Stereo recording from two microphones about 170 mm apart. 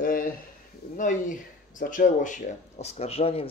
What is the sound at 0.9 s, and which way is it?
Speech, 50° left (ahead or behind).